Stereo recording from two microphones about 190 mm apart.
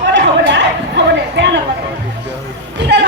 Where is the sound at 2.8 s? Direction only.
65° right (ahead or behind).